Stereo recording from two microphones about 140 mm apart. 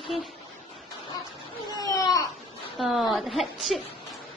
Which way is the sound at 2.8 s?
Centre (ahead or behind).